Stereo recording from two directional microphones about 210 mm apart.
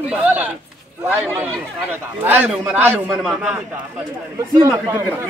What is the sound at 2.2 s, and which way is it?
A man's voice, 5° right (ahead or behind).